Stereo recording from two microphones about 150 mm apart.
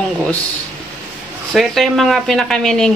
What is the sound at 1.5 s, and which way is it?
Speech, centre (ahead or behind).